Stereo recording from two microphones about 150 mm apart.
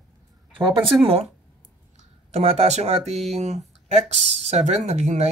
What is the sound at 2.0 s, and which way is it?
Speech, 45° right (ahead or behind).